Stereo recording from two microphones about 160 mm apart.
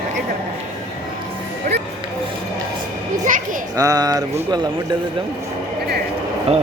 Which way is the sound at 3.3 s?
55° right (ahead or behind).